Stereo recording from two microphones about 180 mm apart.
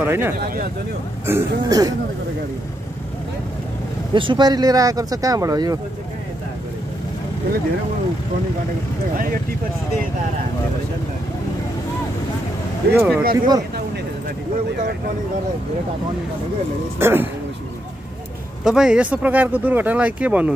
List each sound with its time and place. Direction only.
0.0 s speech: 10° right (ahead or behind)
4.1 s speech: 25° right (ahead or behind)
12.9 s speech: 5° right (ahead or behind)
13.2 s speech: 55° right (ahead or behind)
17.0 s speech: 10° right (ahead or behind)
18.6 s speech: 5° right (ahead or behind)